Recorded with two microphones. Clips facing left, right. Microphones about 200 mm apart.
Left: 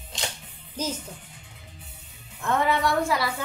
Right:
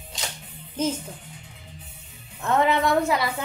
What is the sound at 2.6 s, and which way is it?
Speech, 20° right (ahead or behind).